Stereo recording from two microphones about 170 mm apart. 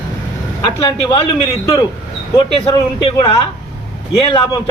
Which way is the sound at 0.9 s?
30° left (ahead or behind).